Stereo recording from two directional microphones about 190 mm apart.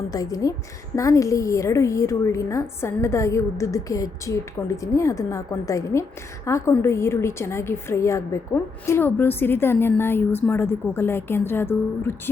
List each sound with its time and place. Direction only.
0.1 s a woman's voice: 20° left (ahead or behind)